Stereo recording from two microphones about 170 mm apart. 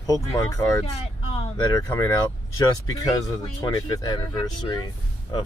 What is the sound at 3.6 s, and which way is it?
Speech, 25° left (ahead or behind).